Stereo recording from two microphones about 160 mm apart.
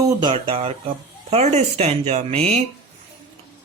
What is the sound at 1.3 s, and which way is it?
Speech, 45° right (ahead or behind).